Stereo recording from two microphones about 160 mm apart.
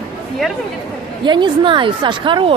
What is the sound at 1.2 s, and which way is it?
A woman's voice, 30° right (ahead or behind).